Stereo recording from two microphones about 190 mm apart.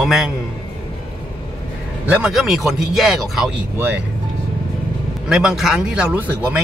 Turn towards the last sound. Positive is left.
turn(degrees=-5)  # may be behind; listen again after turning